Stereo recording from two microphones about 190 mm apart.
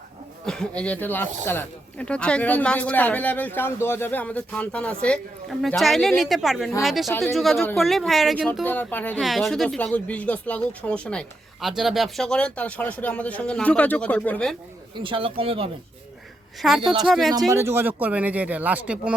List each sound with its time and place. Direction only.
0.4 s speech: 5° left (ahead or behind)
14.9 s speech: 25° right (ahead or behind)
16.6 s speech: centre (ahead or behind)
17.5 s speech: 15° right (ahead or behind)